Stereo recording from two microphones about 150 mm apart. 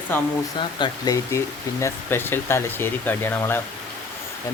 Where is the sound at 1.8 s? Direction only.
15° left (ahead or behind).